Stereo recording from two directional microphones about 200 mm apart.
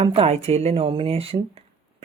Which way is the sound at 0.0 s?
30° right (ahead or behind).